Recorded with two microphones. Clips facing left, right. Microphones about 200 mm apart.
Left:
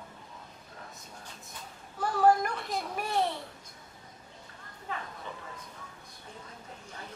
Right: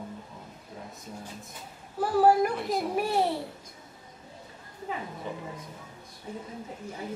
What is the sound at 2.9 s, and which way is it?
Babbling, 10° right (ahead or behind).